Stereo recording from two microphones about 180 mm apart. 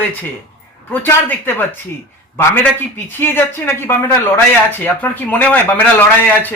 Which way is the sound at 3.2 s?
10° left (ahead or behind).